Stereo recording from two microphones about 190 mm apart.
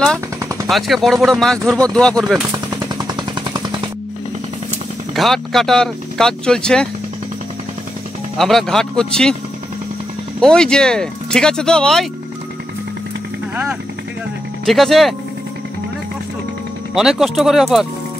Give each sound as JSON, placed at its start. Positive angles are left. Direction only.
{"t": 0.4, "sound": "gunshot", "side_deg": -15}
{"t": 0.7, "sound": "speech", "side_deg": 0}
{"t": 2.5, "sound": "gunshot", "side_deg": -20}
{"t": 5.1, "sound": "speech", "side_deg": 0}
{"t": 8.4, "sound": "speech", "side_deg": 0}
{"t": 10.4, "sound": "speech", "side_deg": 5}
{"t": 14.7, "sound": "speech", "side_deg": 0}
{"t": 16.9, "sound": "speech", "side_deg": -5}